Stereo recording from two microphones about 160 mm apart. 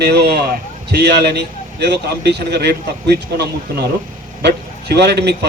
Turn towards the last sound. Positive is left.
turn(degrees=-90)